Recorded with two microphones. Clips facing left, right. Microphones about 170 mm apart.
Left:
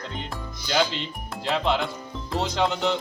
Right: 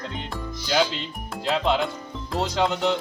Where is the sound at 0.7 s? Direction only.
Centre (ahead or behind).